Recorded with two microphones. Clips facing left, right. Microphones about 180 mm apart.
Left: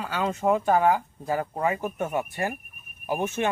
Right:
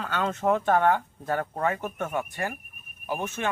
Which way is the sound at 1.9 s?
15° left (ahead or behind).